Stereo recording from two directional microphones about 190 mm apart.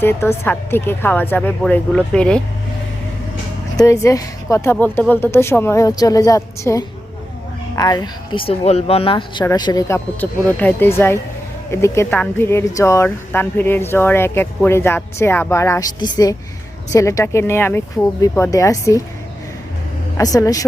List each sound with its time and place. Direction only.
0.0 s speech: 15° left (ahead or behind)
3.8 s speech: 15° left (ahead or behind)
20.1 s speech: 15° left (ahead or behind)